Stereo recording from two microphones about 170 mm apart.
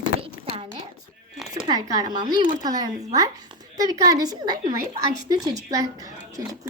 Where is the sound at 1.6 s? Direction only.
20° right (ahead or behind).